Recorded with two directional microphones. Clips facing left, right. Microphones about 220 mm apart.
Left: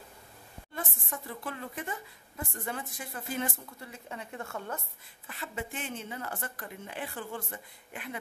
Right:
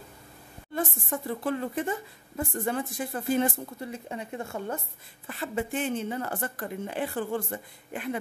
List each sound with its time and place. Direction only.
0.7 s a woman's voice: 30° right (ahead or behind)
5.2 s a woman's voice: 40° right (ahead or behind)